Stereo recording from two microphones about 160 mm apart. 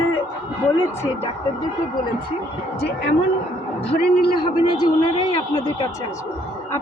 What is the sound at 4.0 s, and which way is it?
Speech, 80° left.